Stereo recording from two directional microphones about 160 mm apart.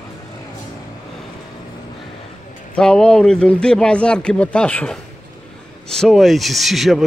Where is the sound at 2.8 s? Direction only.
5° left (ahead or behind).